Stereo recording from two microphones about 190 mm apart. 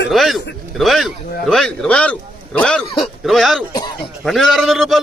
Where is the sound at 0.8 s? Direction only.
Centre (ahead or behind).